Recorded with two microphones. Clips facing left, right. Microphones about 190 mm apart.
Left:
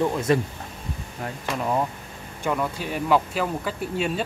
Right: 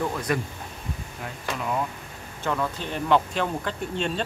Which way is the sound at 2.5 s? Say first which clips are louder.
Left 2 dB; 10° left (ahead or behind).